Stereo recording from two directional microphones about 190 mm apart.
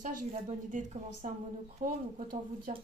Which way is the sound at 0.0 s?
40° right (ahead or behind).